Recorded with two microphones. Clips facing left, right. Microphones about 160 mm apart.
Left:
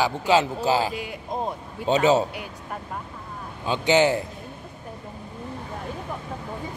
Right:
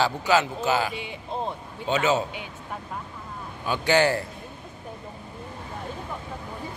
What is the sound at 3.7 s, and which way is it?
Speech, 20° left (ahead or behind).